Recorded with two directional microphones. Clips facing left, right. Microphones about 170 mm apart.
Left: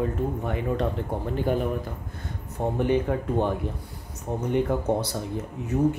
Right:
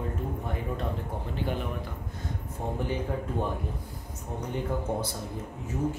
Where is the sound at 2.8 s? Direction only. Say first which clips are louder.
Left 9 dB; 70° left (ahead or behind).